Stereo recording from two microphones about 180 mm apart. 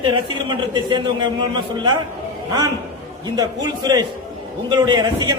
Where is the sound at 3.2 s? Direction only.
20° right (ahead or behind).